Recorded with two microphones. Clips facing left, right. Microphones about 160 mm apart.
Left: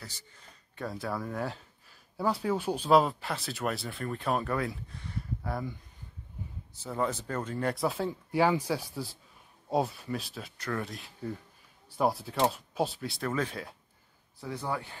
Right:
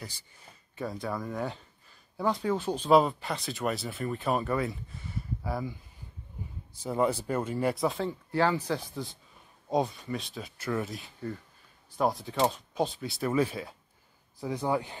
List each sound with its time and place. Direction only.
0.7 s speech: centre (ahead or behind)
8.3 s speech: 10° left (ahead or behind); by 13.7 s 5° right (ahead or behind)
14.4 s speech: 15° right (ahead or behind)